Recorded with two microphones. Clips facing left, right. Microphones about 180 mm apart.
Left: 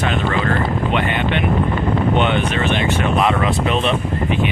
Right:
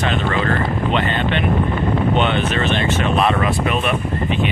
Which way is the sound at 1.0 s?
15° left (ahead or behind).